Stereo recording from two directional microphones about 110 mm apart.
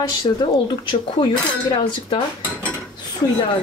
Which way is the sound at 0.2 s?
45° left (ahead or behind).